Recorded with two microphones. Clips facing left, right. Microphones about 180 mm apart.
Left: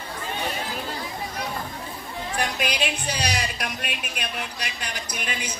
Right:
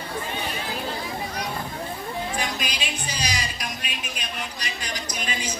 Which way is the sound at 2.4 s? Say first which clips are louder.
Left 4 dB; 60° left (ahead or behind).